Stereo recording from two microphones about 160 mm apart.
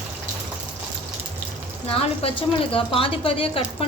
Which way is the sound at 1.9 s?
35° left (ahead or behind).